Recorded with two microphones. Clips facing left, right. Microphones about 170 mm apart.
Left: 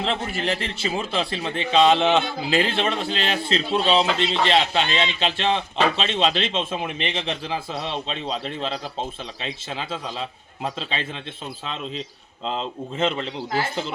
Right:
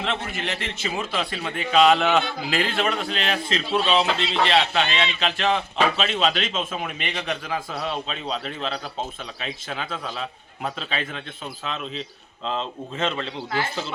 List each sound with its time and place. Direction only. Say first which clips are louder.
0.0 s a man's voice: left 3 dB; 35° left (ahead or behind)
13.0 s a man's voice: left 3 dB; 30° left (ahead or behind)